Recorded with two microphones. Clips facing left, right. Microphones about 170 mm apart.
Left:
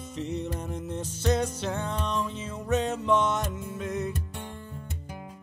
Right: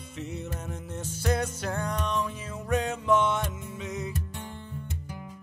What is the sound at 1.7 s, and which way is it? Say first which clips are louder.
Music: even; 25° left (ahead or behind).